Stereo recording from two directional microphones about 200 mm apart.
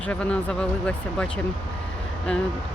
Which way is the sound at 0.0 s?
5° left (ahead or behind).